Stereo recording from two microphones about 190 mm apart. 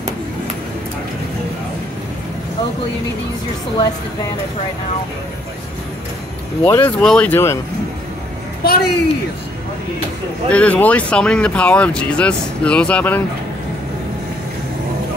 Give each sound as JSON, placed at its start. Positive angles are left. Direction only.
{"t": 6.6, "sound": "speech", "side_deg": 10}
{"t": 8.6, "sound": "a woman's voice", "side_deg": 60}
{"t": 10.5, "sound": "speech", "side_deg": 5}